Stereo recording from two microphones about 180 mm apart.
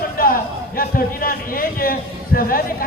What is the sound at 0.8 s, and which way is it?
A man's voice, 55° left (ahead or behind).